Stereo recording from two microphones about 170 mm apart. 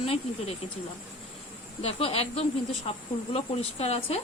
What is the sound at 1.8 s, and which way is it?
Speech, 35° left (ahead or behind).